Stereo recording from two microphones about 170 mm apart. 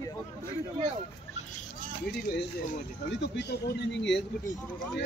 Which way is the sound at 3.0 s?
90° left.